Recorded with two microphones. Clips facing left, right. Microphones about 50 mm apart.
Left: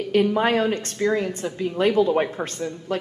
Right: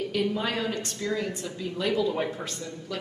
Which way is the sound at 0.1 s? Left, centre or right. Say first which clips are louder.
Left 12 dB; left.